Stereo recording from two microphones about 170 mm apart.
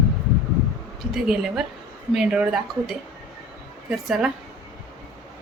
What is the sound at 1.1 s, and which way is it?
Speech, 5° right (ahead or behind).